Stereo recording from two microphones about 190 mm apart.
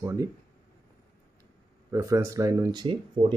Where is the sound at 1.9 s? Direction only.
15° right (ahead or behind).